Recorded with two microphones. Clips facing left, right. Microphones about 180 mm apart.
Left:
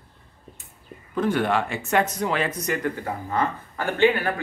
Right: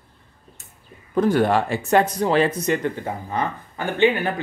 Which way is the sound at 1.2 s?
40° right (ahead or behind).